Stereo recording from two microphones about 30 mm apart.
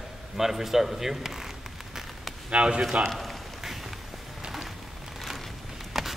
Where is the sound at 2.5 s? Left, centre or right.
Right.